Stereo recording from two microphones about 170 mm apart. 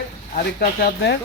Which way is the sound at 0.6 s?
75° left (ahead or behind).